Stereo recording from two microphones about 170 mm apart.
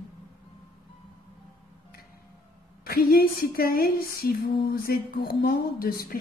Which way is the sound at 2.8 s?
60° left (ahead or behind).